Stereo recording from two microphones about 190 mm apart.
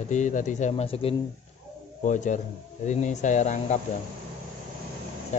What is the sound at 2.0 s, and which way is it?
Speech, 40° left (ahead or behind).